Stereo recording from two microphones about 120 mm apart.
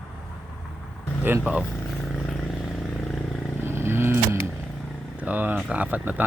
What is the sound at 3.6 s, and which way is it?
Vehicle, 20° right (ahead or behind).